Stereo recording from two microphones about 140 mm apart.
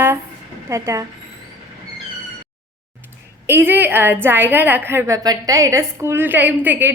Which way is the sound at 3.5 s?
15° right (ahead or behind).